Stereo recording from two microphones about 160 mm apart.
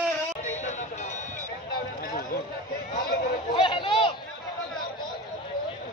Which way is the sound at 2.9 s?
70° left (ahead or behind).